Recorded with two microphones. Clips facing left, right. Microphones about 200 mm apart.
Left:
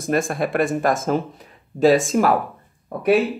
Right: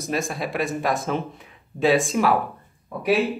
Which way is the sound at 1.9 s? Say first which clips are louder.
Left 3 dB; centre (ahead or behind).